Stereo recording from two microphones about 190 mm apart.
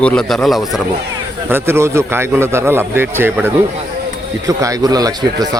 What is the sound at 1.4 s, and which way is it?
A man's voice, 10° right (ahead or behind).